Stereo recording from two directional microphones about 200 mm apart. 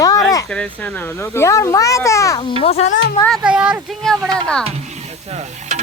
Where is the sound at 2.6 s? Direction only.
30° left (ahead or behind).